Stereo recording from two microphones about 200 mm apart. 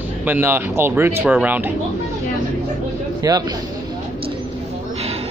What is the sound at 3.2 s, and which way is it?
Speech, 20° right (ahead or behind).